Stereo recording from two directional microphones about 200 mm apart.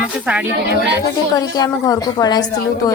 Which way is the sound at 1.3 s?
20° left (ahead or behind).